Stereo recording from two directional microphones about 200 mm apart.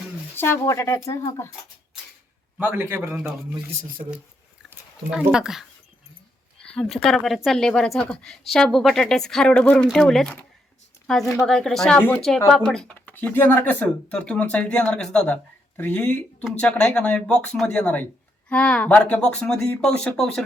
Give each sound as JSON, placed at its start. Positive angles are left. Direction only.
{"t": 0.3, "sound": "speech", "side_deg": 10}
{"t": 2.9, "sound": "a man's voice", "side_deg": -15}
{"t": 3.7, "sound": "speech", "side_deg": -45}
{"t": 4.7, "sound": "speech", "side_deg": -5}
{"t": 11.0, "sound": "a sound", "side_deg": 0}
{"t": 11.4, "sound": "speech", "side_deg": 0}